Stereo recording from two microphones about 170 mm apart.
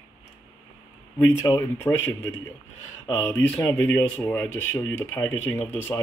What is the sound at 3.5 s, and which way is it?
Speech, 15° left (ahead or behind).